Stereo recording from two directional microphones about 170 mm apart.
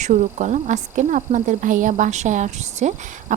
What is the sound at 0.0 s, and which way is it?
Speech, 45° right (ahead or behind).